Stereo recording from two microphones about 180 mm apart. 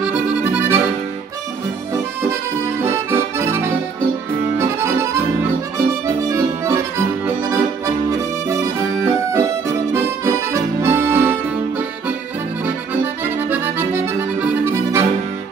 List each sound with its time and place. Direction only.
0.0 s accordion: 5° right (ahead or behind)
6.2 s accordion: 15° right (ahead or behind)
8.5 s accordion: 15° right (ahead or behind)
13.2 s accordion: 15° right (ahead or behind)